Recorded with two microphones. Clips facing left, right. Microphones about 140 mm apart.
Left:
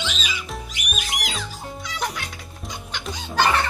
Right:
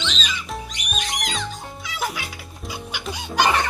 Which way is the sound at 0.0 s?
10° left (ahead or behind).